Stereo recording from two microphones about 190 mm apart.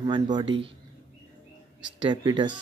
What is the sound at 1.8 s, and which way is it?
Speech, 25° right (ahead or behind).